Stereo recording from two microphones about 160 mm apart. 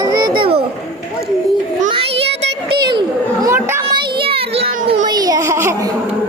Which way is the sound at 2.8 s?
25° right (ahead or behind).